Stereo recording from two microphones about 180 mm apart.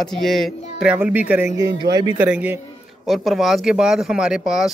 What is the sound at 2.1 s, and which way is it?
Speech, 10° right (ahead or behind).